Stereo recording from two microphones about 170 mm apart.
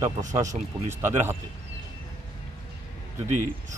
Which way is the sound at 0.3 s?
20° right (ahead or behind).